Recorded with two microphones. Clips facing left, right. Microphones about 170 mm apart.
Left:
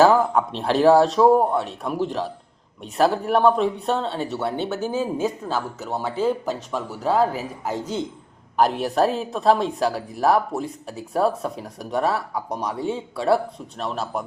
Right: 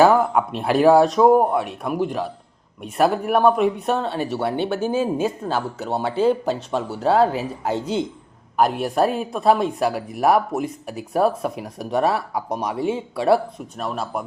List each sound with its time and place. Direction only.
0.0 s a sound: 15° right (ahead or behind)
0.6 s speech: 10° right (ahead or behind)
8.6 s speech: 5° right (ahead or behind); by 13.4 s 20° right (ahead or behind)
13.7 s speech: 5° right (ahead or behind)